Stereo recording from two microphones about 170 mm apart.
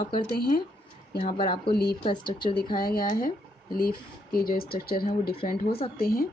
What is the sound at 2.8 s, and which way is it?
Speech, 60° left (ahead or behind).